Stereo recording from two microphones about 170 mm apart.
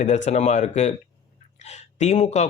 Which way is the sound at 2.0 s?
40° left (ahead or behind).